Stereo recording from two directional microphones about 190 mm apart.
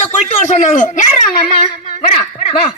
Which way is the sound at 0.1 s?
40° left (ahead or behind).